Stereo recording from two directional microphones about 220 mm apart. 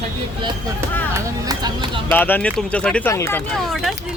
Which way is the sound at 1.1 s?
20° right (ahead or behind).